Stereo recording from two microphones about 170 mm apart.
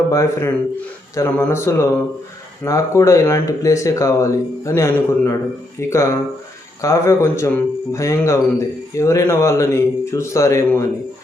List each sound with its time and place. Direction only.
0.1 s speech: 15° left (ahead or behind)